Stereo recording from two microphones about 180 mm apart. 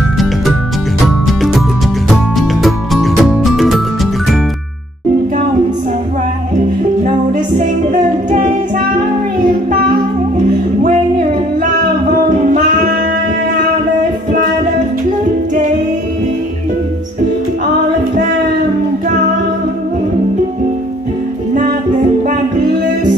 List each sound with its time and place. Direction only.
1.0 s music: centre (ahead or behind)
7.3 s music: 45° right (ahead or behind)
10.3 s music: 45° right (ahead or behind)